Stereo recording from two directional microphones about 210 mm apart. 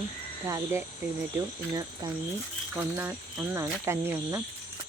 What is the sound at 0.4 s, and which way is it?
Cricket, 15° right (ahead or behind).